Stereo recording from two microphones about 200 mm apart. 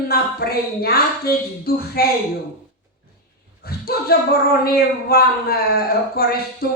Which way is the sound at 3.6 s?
50° left (ahead or behind).